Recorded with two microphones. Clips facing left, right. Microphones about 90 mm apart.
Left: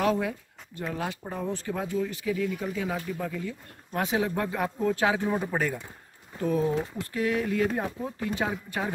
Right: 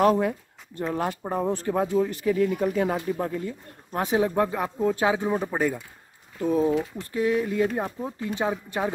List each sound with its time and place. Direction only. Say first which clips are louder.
0.0 s speech: right 5 dB; 45° right (ahead or behind)
3.1 s a man's voice: right 5 dB; 40° right (ahead or behind)